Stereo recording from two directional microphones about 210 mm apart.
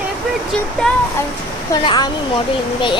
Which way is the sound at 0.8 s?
Centre (ahead or behind).